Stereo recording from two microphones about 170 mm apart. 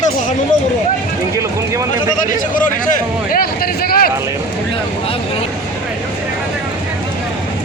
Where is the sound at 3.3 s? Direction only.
60° left (ahead or behind).